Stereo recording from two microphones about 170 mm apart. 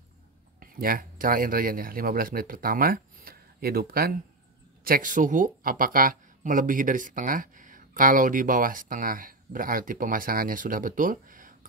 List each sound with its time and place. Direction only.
0.6 s speech: 55° right (ahead or behind)